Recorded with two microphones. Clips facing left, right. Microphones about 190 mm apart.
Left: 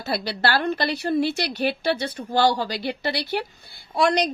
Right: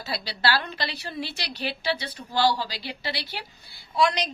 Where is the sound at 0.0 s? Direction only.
55° left (ahead or behind).